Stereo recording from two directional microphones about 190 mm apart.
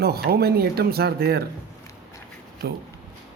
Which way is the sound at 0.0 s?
55° right (ahead or behind).